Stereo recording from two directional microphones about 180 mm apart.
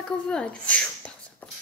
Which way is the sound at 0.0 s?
5° left (ahead or behind).